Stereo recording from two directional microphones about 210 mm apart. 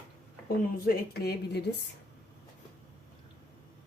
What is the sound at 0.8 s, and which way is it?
Speech, 50° left (ahead or behind).